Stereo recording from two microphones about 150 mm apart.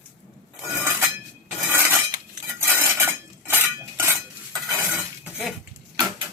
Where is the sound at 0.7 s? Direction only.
20° right (ahead or behind).